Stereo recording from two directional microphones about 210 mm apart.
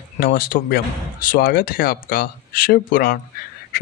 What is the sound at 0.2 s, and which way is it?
Speech, 45° left (ahead or behind).